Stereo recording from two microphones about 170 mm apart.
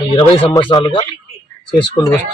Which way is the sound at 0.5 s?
25° left (ahead or behind).